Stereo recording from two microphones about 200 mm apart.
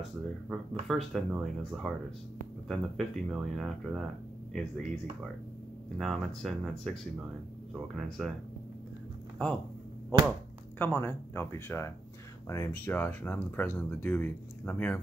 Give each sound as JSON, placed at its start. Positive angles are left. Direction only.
{"t": 0.0, "sound": "speech", "side_deg": 0}
{"t": 5.9, "sound": "speech", "side_deg": 0}
{"t": 8.2, "sound": "speech", "side_deg": 0}
{"t": 10.1, "sound": "speech", "side_deg": 10}